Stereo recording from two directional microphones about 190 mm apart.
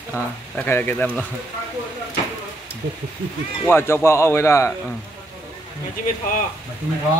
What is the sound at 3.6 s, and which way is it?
A man's voice, 10° left (ahead or behind).